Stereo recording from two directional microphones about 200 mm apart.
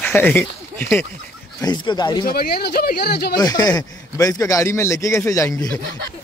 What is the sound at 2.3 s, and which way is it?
Speech, 50° left (ahead or behind).